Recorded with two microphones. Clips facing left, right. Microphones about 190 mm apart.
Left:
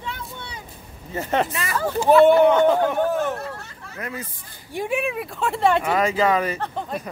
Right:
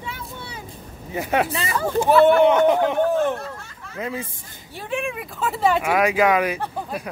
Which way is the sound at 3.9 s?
25° right (ahead or behind).